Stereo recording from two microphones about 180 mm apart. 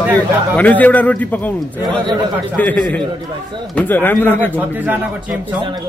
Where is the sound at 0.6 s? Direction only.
10° left (ahead or behind).